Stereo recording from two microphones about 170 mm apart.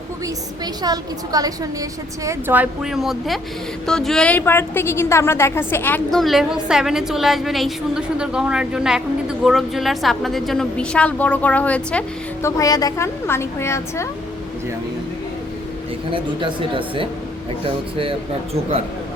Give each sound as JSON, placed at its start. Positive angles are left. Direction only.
{"t": 0.6, "sound": "a woman's voice", "side_deg": -25}
{"t": 16.1, "sound": "speech", "side_deg": -30}